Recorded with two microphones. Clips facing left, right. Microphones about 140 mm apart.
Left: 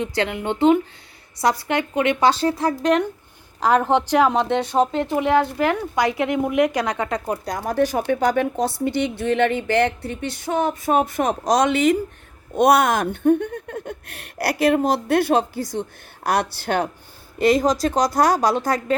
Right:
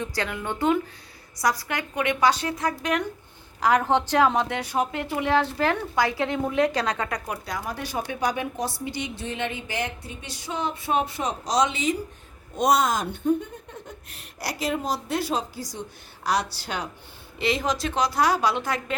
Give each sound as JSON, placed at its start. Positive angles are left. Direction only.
{"t": 0.0, "sound": "speech", "side_deg": 25}
{"t": 3.8, "sound": "a woman's voice", "side_deg": 15}
{"t": 7.4, "sound": "speech", "side_deg": 45}
{"t": 17.3, "sound": "speech", "side_deg": 45}